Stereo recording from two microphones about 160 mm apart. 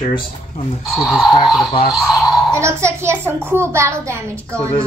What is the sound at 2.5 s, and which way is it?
A child's voice, 15° right (ahead or behind).